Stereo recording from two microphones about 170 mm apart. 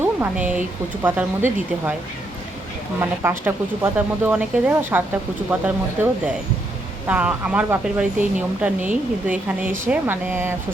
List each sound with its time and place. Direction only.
0.0 s speech: 10° right (ahead or behind)
3.0 s speech: 15° right (ahead or behind)